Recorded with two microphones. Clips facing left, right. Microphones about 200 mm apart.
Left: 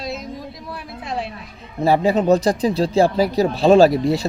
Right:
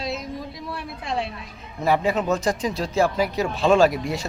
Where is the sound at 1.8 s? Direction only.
30° left (ahead or behind).